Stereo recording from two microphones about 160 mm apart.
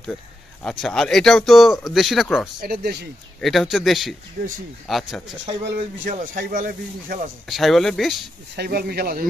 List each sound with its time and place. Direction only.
0.7 s speech: centre (ahead or behind)
2.6 s speech: 75° right (ahead or behind)
3.3 s speech: centre (ahead or behind)
4.4 s speech: 65° right (ahead or behind)
4.8 s speech: centre (ahead or behind)
6.0 s speech: 55° right (ahead or behind)
7.4 s speech: centre (ahead or behind)
8.5 s speech: 80° right